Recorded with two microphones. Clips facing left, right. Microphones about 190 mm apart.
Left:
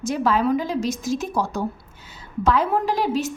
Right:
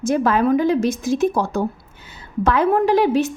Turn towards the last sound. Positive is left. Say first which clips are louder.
# right 7 dB
turn(degrees=-60)  # may be behind; listen again after turning